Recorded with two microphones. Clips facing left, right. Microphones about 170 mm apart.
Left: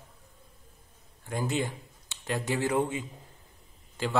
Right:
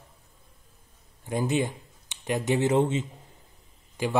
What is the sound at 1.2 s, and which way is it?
A man's voice, 20° right (ahead or behind).